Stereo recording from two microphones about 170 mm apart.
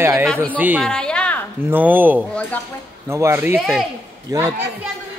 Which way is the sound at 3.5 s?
Centre (ahead or behind).